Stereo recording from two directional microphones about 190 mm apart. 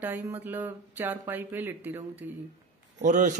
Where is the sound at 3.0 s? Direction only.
40° right (ahead or behind).